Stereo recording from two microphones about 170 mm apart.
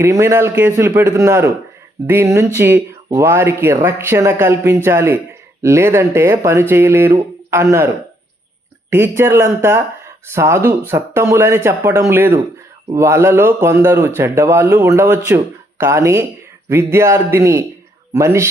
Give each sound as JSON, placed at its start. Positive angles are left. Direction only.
{"t": 0.0, "sound": "speech", "side_deg": -15}
{"t": 8.9, "sound": "speech", "side_deg": -15}